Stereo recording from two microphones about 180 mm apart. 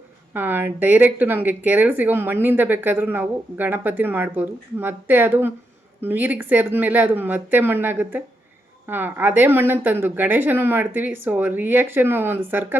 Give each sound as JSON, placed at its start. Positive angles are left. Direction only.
{"t": 0.3, "sound": "speech", "side_deg": -10}